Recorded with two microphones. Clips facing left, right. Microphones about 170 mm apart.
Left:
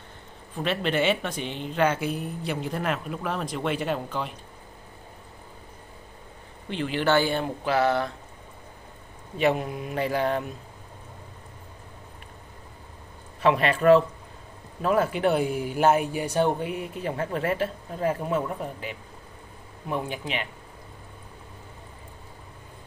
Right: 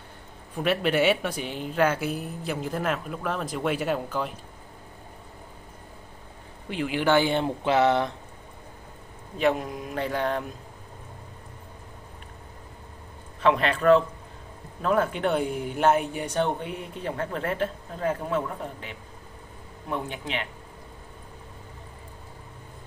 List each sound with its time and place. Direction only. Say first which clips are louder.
0.6 s speech: right 2 dB; 10° right (ahead or behind)
6.7 s speech: right 1 dB; 10° right (ahead or behind)
9.4 s speech: even; 5° left (ahead or behind)
13.4 s a man's voice: left 1 dB; 5° left (ahead or behind)
14.8 s speech: left 1 dB; 5° left (ahead or behind)